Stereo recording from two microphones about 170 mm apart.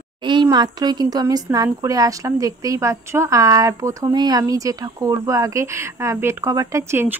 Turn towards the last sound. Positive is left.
turn(degrees=-15)  # may be behind; listen again after turning